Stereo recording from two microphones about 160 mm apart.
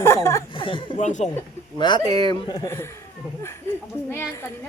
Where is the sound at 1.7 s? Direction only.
30° left (ahead or behind).